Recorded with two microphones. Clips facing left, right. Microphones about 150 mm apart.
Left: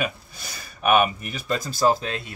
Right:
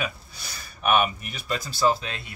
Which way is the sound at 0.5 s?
45° left (ahead or behind).